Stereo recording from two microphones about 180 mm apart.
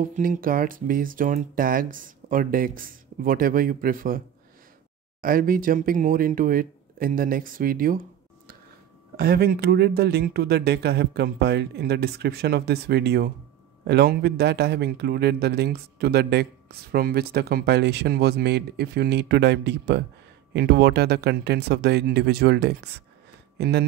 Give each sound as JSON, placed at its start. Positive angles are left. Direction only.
{"t": 0.0, "sound": "speech", "side_deg": -45}
{"t": 5.2, "sound": "speech", "side_deg": -50}